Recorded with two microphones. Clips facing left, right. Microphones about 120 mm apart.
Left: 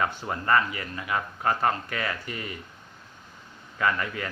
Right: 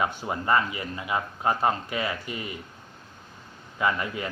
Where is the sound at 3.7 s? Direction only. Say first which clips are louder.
Even; 20° right (ahead or behind).